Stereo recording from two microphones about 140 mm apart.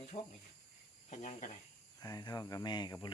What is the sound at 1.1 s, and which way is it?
Speech, 55° left (ahead or behind).